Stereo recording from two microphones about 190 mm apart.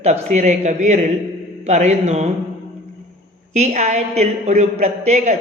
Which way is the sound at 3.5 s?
35° right (ahead or behind).